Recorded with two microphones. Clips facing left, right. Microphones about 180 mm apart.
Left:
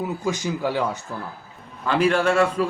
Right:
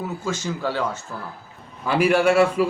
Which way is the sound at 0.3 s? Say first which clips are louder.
Left 1 dB; 15° left (ahead or behind).